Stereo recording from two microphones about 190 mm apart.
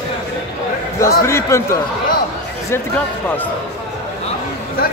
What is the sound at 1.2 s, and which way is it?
Speech, 15° left (ahead or behind).